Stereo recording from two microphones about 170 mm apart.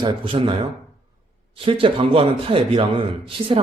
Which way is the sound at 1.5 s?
30° right (ahead or behind).